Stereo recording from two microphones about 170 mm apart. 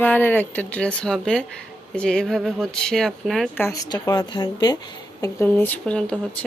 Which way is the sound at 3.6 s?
20° left (ahead or behind).